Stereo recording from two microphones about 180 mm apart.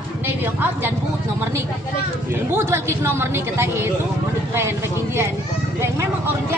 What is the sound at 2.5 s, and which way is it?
A woman's voice, 15° right (ahead or behind).